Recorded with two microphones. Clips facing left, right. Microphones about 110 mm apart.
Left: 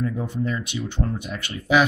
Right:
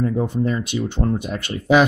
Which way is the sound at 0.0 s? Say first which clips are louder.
Right 6 dB; 35° right (ahead or behind).